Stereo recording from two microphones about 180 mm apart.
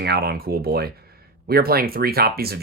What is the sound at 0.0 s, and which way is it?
Speech, 65° right (ahead or behind).